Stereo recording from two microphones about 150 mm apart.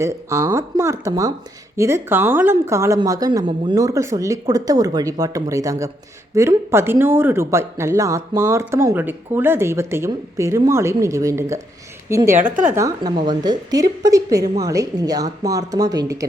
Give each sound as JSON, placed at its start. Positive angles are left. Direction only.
{"t": 0.0, "sound": "a woman's voice", "side_deg": -20}
{"t": 12.4, "sound": "a woman's voice", "side_deg": -60}
{"t": 12.7, "sound": "speech", "side_deg": -20}